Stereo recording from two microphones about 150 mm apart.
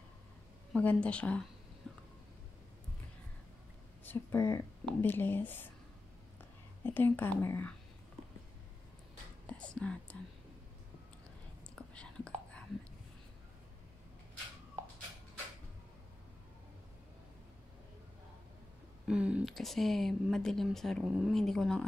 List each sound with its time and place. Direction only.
0.7 s speech: 10° left (ahead or behind)
1.8 s a sound: centre (ahead or behind)
4.0 s speech: 15° left (ahead or behind)
6.8 s speech: 15° left (ahead or behind)
9.5 s speech: 5° left (ahead or behind)
11.7 s whispering: 5° left (ahead or behind)
19.0 s speech: 5° right (ahead or behind)